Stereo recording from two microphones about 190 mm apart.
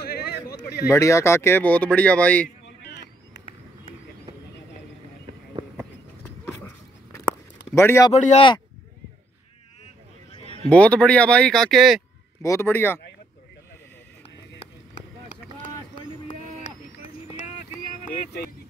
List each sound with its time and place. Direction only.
0.0 s a sound: 55° left (ahead or behind)
0.8 s speech: 15° left (ahead or behind)
2.8 s vehicle: 65° left (ahead or behind)
6.4 s a sound: 10° left (ahead or behind)
7.7 s speech: 15° left (ahead or behind)
8.1 s a man's voice: 35° left (ahead or behind)
10.7 s speech: 5° left (ahead or behind)
12.4 s speech: 15° left (ahead or behind)